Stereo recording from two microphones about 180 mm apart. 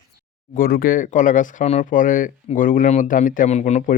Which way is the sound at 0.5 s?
55° left (ahead or behind).